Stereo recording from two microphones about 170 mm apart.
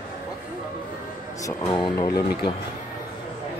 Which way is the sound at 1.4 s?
20° left (ahead or behind).